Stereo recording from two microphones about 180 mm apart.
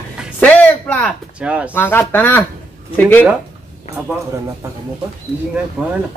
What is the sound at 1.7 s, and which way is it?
Speech, 10° left (ahead or behind).